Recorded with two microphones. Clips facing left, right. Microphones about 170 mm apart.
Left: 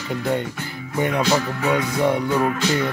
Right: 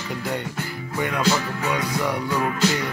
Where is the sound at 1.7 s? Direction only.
25° left (ahead or behind).